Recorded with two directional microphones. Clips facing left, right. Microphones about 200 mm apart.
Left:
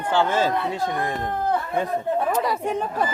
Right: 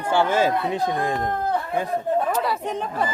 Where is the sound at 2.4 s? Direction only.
10° left (ahead or behind).